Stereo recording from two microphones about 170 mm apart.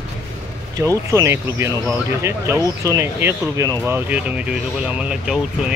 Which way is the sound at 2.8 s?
15° right (ahead or behind).